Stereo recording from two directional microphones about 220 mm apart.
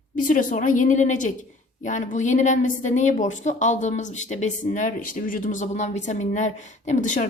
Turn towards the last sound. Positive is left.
turn(degrees=35)  # may be behind; listen again after turning